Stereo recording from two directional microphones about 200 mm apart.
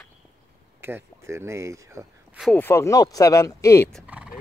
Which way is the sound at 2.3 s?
Centre (ahead or behind).